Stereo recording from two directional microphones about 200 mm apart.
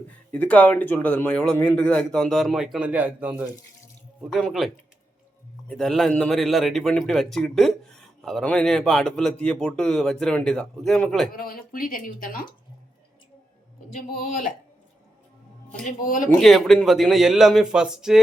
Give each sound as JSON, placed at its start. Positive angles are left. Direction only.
{"t": 0.3, "sound": "a man's voice", "side_deg": 5}
{"t": 11.3, "sound": "speech", "side_deg": 45}
{"t": 13.9, "sound": "speech", "side_deg": 40}
{"t": 15.8, "sound": "speech", "side_deg": 40}
{"t": 16.4, "sound": "a man's voice", "side_deg": 0}